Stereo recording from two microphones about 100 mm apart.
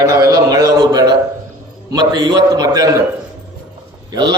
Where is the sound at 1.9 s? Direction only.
40° right (ahead or behind).